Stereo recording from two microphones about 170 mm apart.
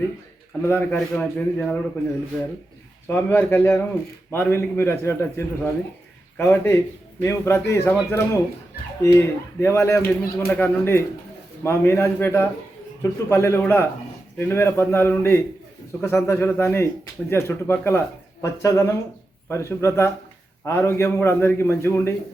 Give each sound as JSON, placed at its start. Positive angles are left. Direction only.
{"t": 0.6, "sound": "a man's voice", "side_deg": 10}
{"t": 3.1, "sound": "a man's voice", "side_deg": 10}